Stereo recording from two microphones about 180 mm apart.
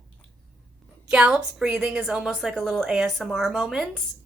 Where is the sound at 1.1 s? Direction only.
5° right (ahead or behind).